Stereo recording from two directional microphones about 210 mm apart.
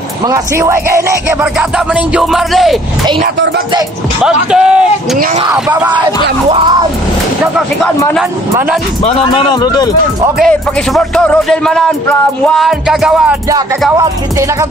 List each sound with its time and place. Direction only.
0.3 s speech: 15° right (ahead or behind)
4.2 s a man's voice: 5° right (ahead or behind)
9.0 s speech: 25° left (ahead or behind)
10.4 s speech: centre (ahead or behind)